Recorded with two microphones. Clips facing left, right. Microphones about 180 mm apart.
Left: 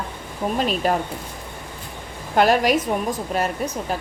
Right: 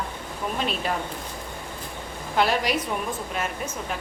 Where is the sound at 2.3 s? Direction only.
45° left (ahead or behind).